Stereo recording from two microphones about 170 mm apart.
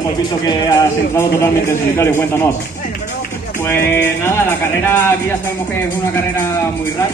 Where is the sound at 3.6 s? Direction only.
10° left (ahead or behind).